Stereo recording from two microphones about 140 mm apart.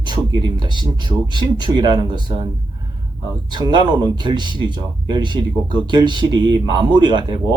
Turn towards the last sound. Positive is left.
turn(degrees=-35)  # may be behind; listen again after turning